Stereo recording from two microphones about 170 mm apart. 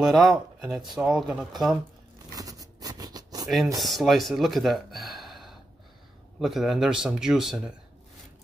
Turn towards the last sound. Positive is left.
turn(degrees=0)  # may be behind; listen again after turning